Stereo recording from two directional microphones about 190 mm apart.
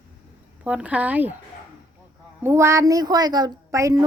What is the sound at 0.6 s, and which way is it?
Speech, 5° right (ahead or behind).